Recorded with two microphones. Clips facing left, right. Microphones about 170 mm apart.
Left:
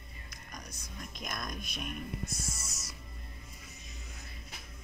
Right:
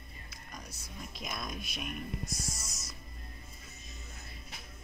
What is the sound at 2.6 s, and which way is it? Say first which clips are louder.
Music: even; 10° left (ahead or behind).